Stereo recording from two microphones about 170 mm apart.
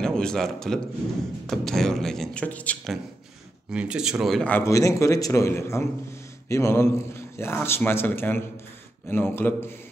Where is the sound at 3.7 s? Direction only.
5° right (ahead or behind).